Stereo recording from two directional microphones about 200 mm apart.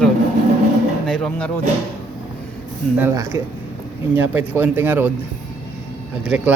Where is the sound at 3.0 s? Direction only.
10° right (ahead or behind).